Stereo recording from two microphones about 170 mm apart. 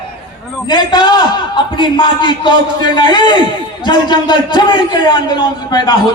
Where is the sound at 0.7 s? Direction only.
25° left (ahead or behind).